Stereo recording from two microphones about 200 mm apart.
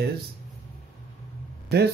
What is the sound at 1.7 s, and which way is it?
Speech, 55° right (ahead or behind).